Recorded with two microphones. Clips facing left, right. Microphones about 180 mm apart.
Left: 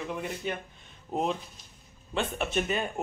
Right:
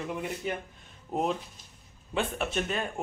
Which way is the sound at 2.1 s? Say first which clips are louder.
Left 1 dB; centre (ahead or behind).